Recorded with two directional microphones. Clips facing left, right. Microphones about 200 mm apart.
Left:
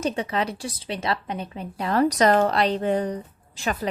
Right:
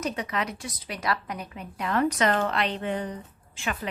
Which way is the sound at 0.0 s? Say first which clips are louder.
Left 4 dB; 30° left (ahead or behind).